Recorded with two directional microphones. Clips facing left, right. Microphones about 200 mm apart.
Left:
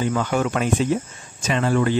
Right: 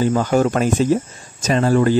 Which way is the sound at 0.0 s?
35° right (ahead or behind).